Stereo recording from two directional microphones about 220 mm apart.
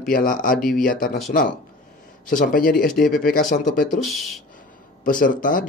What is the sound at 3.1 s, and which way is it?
Speech, 40° left (ahead or behind).